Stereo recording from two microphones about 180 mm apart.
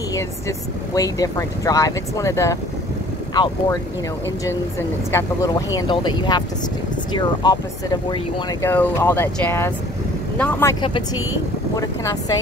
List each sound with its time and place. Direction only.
0.1 s speech: 20° left (ahead or behind)
4.5 s speech: 15° left (ahead or behind)
10.8 s speech: 25° left (ahead or behind)